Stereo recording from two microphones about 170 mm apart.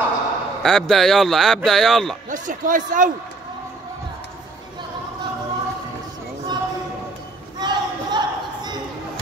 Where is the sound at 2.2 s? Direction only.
50° right (ahead or behind).